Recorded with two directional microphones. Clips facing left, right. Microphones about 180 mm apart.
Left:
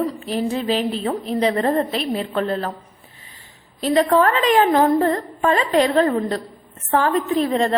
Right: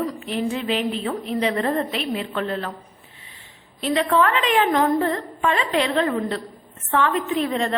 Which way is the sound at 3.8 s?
40° left (ahead or behind).